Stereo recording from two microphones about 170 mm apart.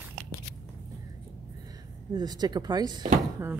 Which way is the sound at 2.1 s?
25° right (ahead or behind).